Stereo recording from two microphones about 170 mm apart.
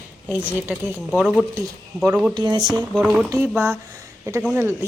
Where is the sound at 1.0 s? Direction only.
5° right (ahead or behind).